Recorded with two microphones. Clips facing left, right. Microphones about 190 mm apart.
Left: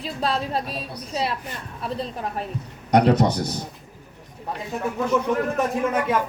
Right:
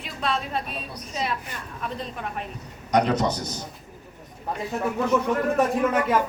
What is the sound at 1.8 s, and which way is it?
Speech, 35° left (ahead or behind).